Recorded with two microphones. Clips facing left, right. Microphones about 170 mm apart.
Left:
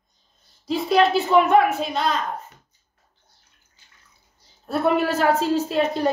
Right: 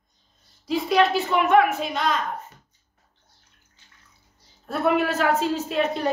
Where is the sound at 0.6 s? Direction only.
35° left (ahead or behind).